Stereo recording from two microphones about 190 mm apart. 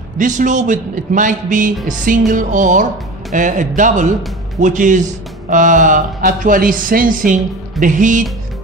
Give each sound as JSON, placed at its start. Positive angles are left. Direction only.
{"t": 0.2, "sound": "speech", "side_deg": -45}